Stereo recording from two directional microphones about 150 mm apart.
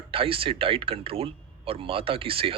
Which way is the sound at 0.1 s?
35° right (ahead or behind).